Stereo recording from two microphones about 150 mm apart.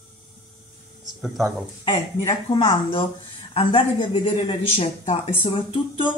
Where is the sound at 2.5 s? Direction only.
35° left (ahead or behind).